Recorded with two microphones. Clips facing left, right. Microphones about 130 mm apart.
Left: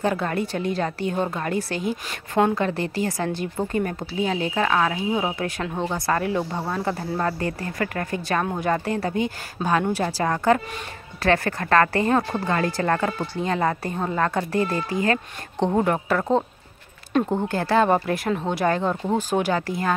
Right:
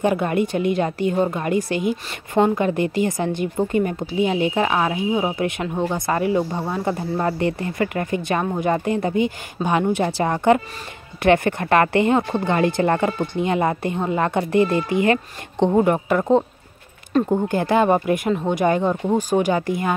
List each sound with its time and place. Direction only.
0.0 s speech: 15° right (ahead or behind)
9.6 s a woman's voice: centre (ahead or behind)
9.9 s speech: 20° right (ahead or behind)
15.6 s speech: 10° right (ahead or behind)